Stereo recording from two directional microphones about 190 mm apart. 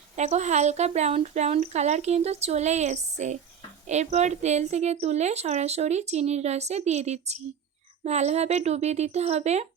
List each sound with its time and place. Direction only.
0.2 s a woman's voice: 35° right (ahead or behind)